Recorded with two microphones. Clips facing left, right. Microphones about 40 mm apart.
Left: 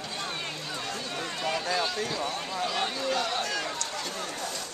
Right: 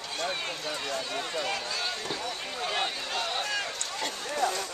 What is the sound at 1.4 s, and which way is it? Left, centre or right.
Run, centre.